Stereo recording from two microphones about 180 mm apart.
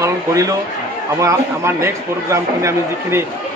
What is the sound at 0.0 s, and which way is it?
A man's voice, 20° right (ahead or behind).